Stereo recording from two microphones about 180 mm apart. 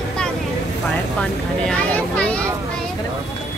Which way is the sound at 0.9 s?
5° left (ahead or behind).